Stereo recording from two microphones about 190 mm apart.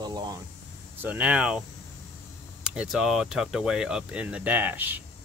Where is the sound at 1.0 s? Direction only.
10° right (ahead or behind).